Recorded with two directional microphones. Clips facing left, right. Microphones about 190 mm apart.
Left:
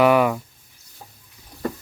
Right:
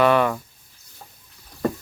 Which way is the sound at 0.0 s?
10° left (ahead or behind).